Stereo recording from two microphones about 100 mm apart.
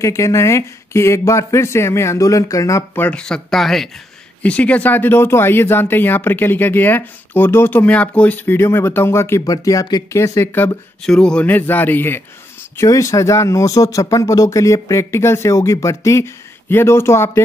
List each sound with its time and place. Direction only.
0.0 s speech: 30° left (ahead or behind)
3.0 s speech: 10° left (ahead or behind)
4.4 s speech: 15° left (ahead or behind)
9.5 s speech: 35° left (ahead or behind)
11.1 s speech: 10° left (ahead or behind)
12.7 s speech: 30° left (ahead or behind)